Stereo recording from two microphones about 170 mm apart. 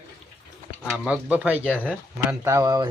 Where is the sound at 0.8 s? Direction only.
5° right (ahead or behind); by 2.9 s 20° right (ahead or behind).